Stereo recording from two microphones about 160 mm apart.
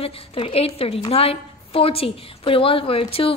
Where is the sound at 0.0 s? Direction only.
35° left (ahead or behind).